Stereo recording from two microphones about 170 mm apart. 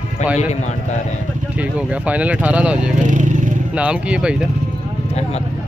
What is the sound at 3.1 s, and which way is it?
Vehicle, 45° right (ahead or behind).